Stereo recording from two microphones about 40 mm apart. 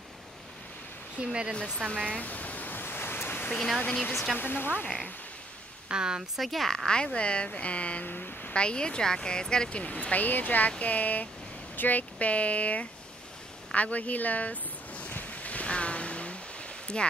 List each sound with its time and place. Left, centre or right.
1.2 s speech: right
2.1 s pink noise: left
3.5 s speech: centre
3.8 s speech: left
4.4 s speech: left
5.9 s speech: right
6.3 s speech: centre
6.9 s speech: left
8.0 s speech: left
8.5 s speech: left
9.8 s speech: left
12.0 s speech: left
13.7 s ocean: left
16.8 s speech: left